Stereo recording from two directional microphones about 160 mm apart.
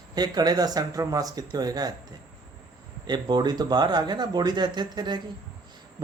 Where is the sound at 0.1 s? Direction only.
25° right (ahead or behind).